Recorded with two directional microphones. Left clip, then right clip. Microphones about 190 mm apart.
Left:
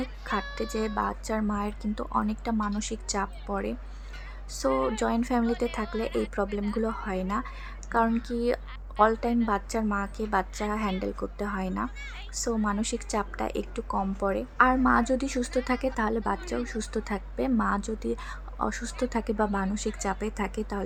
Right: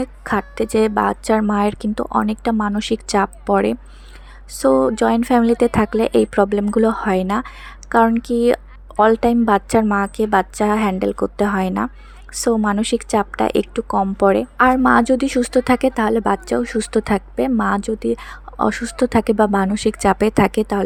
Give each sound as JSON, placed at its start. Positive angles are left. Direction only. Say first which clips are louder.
{"t": 0.0, "sound": "speech", "louder": "right 10 dB", "side_deg": -40}